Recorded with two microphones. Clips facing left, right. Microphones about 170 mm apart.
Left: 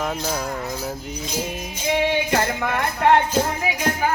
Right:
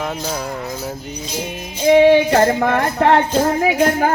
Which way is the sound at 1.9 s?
45° right (ahead or behind).